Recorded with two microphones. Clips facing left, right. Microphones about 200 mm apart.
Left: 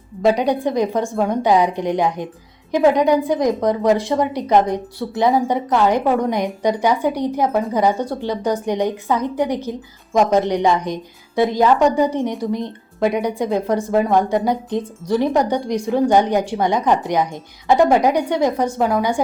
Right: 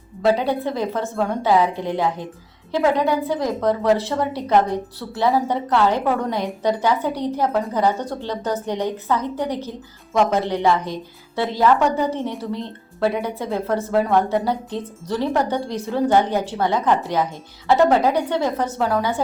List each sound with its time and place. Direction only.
0.2 s a woman's voice: 15° left (ahead or behind)